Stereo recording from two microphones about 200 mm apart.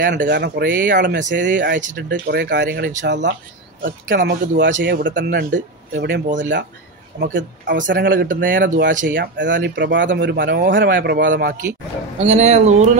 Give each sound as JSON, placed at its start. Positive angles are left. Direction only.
{"t": 0.0, "sound": "speech", "side_deg": -45}
{"t": 0.8, "sound": "speech", "side_deg": -60}
{"t": 1.3, "sound": "speech", "side_deg": -50}
{"t": 2.0, "sound": "speech", "side_deg": -60}
{"t": 7.2, "sound": "speech", "side_deg": -40}
{"t": 7.6, "sound": "speech", "side_deg": -65}
{"t": 7.9, "sound": "speech", "side_deg": -45}
{"t": 9.4, "sound": "speech", "side_deg": -65}
{"t": 12.2, "sound": "speech", "side_deg": -35}